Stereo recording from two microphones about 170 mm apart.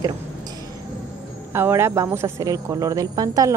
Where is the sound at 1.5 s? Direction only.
15° right (ahead or behind).